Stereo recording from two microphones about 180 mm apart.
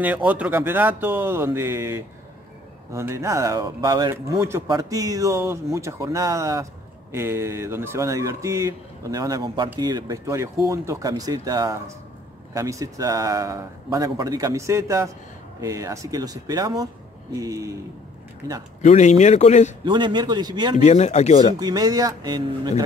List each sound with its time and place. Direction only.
0.0 s a man's voice: 10° right (ahead or behind)
18.9 s a man's voice: 40° left (ahead or behind)
19.8 s a man's voice: 25° right (ahead or behind)
20.8 s a man's voice: 40° left (ahead or behind)
21.5 s a man's voice: 20° right (ahead or behind)